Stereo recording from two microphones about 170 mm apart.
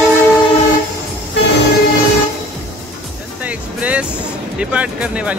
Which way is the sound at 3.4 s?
10° right (ahead or behind).